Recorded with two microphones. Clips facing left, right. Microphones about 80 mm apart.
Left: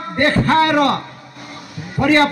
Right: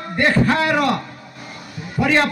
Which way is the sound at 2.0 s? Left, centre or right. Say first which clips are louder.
Left 4 dB; left.